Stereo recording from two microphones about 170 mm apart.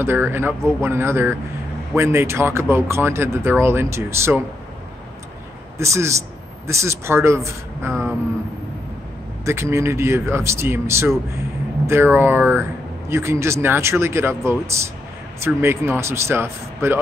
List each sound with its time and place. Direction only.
0.0 s speech: 15° right (ahead or behind)
5.8 s speech: 15° right (ahead or behind)
9.4 s speech: 15° right (ahead or behind)